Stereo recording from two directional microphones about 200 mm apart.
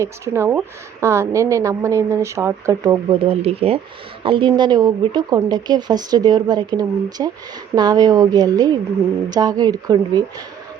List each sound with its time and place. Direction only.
0.0 s speech: 10° right (ahead or behind)
3.1 s speech: 30° right (ahead or behind)